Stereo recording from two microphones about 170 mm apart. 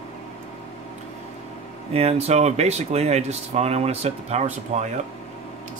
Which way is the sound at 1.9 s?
40° right (ahead or behind).